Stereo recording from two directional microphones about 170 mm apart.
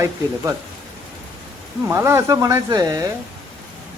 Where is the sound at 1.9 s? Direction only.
15° right (ahead or behind).